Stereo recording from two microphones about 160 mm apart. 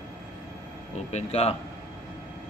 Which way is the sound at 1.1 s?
40° left (ahead or behind).